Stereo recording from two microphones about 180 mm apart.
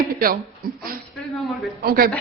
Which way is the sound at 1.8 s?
55° right (ahead or behind).